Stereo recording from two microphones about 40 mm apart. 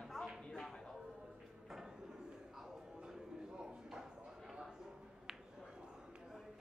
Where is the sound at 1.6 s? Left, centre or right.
Centre.